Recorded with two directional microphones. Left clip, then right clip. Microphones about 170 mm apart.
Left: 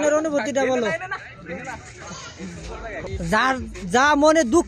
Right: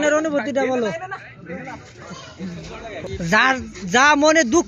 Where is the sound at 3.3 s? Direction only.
20° left (ahead or behind).